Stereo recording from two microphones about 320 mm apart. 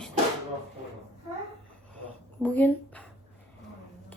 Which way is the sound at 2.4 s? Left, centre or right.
Centre.